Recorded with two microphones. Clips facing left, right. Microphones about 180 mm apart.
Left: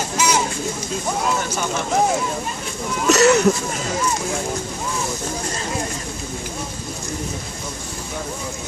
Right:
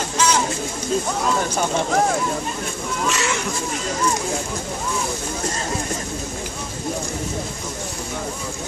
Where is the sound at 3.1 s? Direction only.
40° left (ahead or behind).